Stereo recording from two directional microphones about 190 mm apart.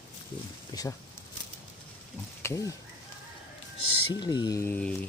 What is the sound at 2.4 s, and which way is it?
Speech, 15° left (ahead or behind).